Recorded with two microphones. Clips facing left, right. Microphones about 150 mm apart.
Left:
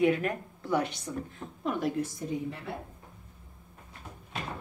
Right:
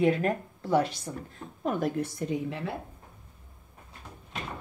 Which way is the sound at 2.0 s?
75° right (ahead or behind).